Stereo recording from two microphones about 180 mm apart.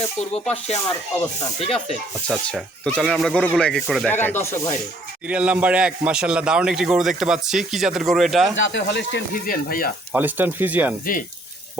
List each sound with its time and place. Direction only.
1.6 s speech: 35° left (ahead or behind)
2.2 s a man's voice: 5° left (ahead or behind)
5.3 s a man's voice: 5° right (ahead or behind)
8.5 s speech: 90° left
9.3 s speech: 55° left (ahead or behind)
10.1 s speech: 10° right (ahead or behind)